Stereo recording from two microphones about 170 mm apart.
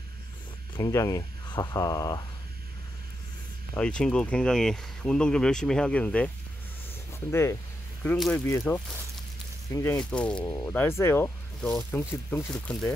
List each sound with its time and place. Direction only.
0.7 s speech: 25° left (ahead or behind)
3.7 s speech: 5° left (ahead or behind)
9.9 s speech: 5° left (ahead or behind)